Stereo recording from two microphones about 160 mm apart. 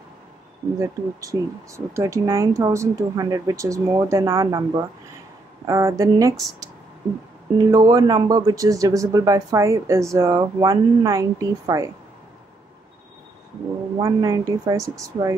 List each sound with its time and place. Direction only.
0.7 s speech: 20° right (ahead or behind)
7.5 s speech: 25° right (ahead or behind)
14.0 s speech: 20° right (ahead or behind)